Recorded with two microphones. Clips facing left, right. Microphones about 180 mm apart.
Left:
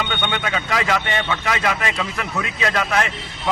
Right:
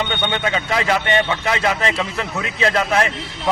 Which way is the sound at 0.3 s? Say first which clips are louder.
Right 2 dB; 25° right (ahead or behind).